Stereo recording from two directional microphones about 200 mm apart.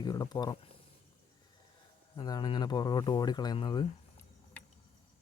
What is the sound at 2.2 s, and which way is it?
Speech, 20° left (ahead or behind).